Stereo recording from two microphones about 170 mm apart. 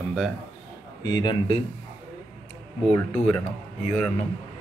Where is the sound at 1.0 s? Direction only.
25° left (ahead or behind).